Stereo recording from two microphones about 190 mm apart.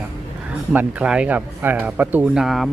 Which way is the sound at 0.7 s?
10° right (ahead or behind).